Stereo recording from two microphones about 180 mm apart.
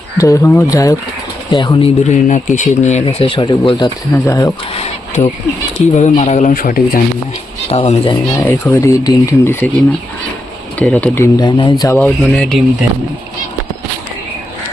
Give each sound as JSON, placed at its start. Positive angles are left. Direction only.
{"t": 0.2, "sound": "speech", "side_deg": 15}
{"t": 1.8, "sound": "speech", "side_deg": 40}
{"t": 4.8, "sound": "a sound", "side_deg": 35}
{"t": 5.9, "sound": "speech", "side_deg": 40}
{"t": 7.7, "sound": "speech", "side_deg": 35}
{"t": 8.4, "sound": "speech", "side_deg": 15}
{"t": 10.8, "sound": "speech", "side_deg": 10}
{"t": 11.9, "sound": "speech", "side_deg": 5}